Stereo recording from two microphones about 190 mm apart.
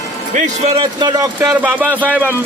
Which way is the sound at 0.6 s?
30° right (ahead or behind).